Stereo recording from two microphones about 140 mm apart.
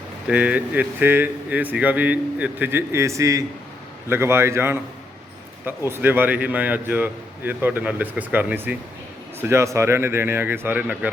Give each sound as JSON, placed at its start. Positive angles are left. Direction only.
{"t": 0.3, "sound": "a man's voice", "side_deg": -10}